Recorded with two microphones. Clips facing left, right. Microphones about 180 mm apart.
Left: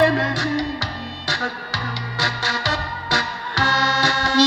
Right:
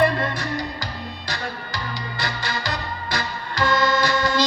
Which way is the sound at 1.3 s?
90° left.